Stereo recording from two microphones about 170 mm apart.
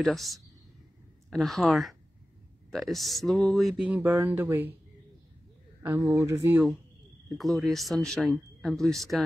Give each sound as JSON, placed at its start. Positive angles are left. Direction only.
{"t": 0.0, "sound": "speech", "side_deg": 0}
{"t": 5.8, "sound": "speech", "side_deg": -15}
{"t": 7.2, "sound": "speech", "side_deg": 0}